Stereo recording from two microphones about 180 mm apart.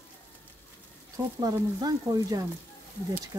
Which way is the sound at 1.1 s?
20° right (ahead or behind).